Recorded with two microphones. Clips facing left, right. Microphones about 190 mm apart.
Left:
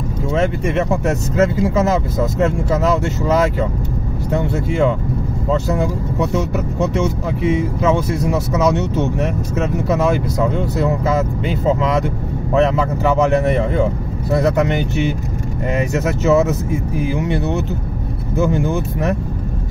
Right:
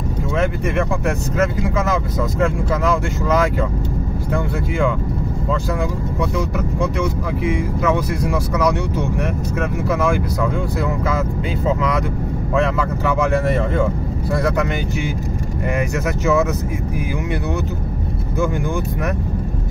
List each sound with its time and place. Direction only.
0.3 s speech: 25° left (ahead or behind)
15.9 s speech: 25° left (ahead or behind)